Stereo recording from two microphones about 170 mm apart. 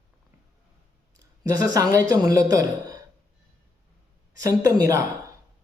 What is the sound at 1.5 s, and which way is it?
A woman's voice, 20° right (ahead or behind).